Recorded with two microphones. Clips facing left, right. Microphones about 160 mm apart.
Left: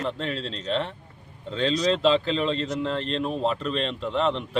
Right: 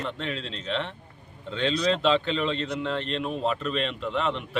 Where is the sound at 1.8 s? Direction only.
35° left (ahead or behind).